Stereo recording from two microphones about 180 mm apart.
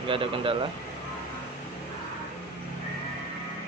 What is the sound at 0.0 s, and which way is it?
Speech, 30° right (ahead or behind).